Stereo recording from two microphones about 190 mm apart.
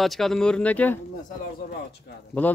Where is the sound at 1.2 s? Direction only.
50° left (ahead or behind).